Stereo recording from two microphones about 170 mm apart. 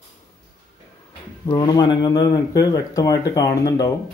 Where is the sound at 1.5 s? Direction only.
25° left (ahead or behind).